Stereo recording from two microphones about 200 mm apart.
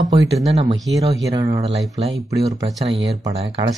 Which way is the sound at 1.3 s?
15° right (ahead or behind).